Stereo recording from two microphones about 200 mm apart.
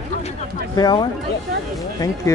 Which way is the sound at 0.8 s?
20° left (ahead or behind).